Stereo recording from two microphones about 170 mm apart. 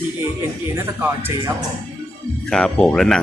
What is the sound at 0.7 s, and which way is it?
Music, 15° right (ahead or behind).